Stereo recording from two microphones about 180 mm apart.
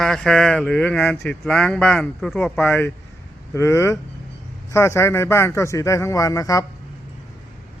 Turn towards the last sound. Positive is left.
turn(degrees=20)  # may be behind; listen again after turning